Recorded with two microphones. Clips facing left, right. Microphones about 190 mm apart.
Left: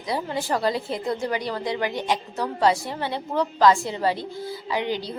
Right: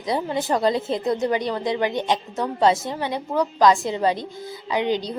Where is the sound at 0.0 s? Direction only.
20° right (ahead or behind).